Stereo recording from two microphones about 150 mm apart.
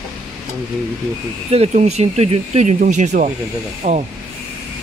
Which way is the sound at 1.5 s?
45° right (ahead or behind).